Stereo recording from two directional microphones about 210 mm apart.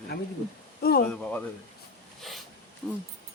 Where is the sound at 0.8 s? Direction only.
45° left (ahead or behind).